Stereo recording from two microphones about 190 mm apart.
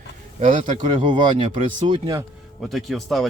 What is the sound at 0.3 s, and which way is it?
Speech, 35° right (ahead or behind).